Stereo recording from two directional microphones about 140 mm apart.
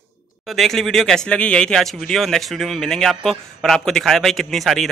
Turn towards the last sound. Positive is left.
turn(degrees=0)  # may be behind; listen again after turning